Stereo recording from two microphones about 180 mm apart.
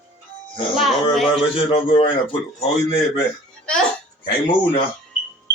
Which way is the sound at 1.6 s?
30° left (ahead or behind).